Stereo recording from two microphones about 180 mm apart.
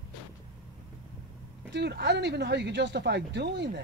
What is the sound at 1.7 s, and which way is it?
Speech, 70° right (ahead or behind).